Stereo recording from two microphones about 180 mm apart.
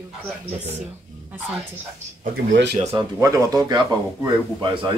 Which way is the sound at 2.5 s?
75° right (ahead or behind).